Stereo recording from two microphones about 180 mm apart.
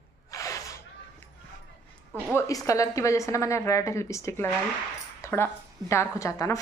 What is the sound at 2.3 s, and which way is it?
A woman's voice, 15° left (ahead or behind).